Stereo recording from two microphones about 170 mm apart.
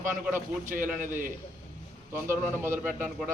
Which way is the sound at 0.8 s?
50° right (ahead or behind).